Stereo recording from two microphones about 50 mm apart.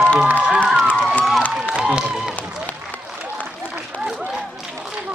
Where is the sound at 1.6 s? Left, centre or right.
Right.